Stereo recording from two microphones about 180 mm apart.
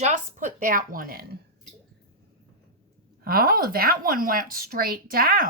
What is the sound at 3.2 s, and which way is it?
A woman's voice, 55° right (ahead or behind).